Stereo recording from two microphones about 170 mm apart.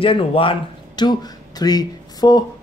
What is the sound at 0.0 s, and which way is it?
Speech, 30° left (ahead or behind).